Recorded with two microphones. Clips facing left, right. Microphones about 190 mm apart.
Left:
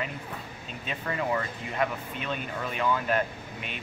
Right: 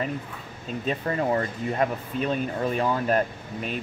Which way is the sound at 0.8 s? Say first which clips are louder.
Right 5 dB; 40° right (ahead or behind).